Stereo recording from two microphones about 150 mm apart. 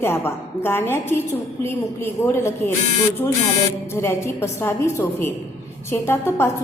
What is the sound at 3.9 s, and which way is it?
A woman's voice, 15° left (ahead or behind).